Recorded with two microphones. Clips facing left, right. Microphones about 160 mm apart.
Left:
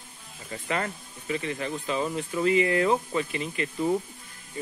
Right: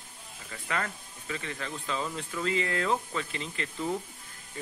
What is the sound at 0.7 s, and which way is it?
Speech, 20° left (ahead or behind).